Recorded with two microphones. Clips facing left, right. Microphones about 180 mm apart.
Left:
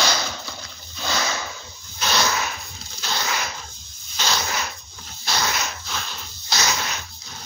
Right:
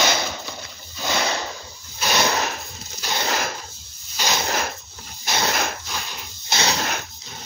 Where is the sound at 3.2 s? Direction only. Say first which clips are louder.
Right 3 dB; 45° right (ahead or behind).